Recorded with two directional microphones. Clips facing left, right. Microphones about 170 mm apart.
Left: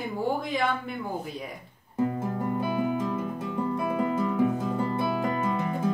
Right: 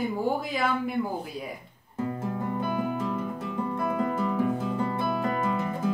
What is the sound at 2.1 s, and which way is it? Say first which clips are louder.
Guitar: left 1 dB; 20° left (ahead or behind).